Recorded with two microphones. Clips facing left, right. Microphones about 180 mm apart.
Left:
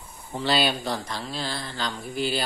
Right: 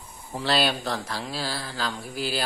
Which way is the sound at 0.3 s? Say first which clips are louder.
Even; centre (ahead or behind).